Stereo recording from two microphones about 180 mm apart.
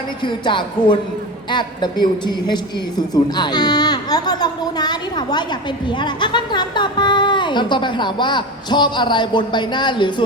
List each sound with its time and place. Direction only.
0.2 s a child's voice: 25° left (ahead or behind)